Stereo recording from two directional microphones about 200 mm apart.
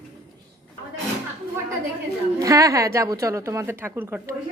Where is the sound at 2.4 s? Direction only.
15° right (ahead or behind).